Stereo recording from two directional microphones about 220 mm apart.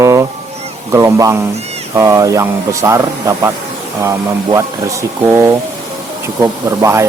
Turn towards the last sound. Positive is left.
turn(degrees=-15)  # may be behind; listen again after turning